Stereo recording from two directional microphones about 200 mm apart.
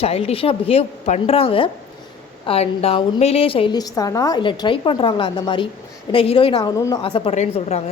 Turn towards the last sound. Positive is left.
turn(degrees=30)  # may be behind; listen again after turning